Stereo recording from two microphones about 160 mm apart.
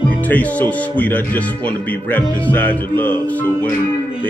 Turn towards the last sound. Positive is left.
turn(degrees=10)  # may be behind; listen again after turning